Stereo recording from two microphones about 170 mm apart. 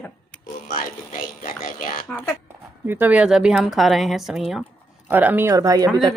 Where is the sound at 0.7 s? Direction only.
55° left (ahead or behind).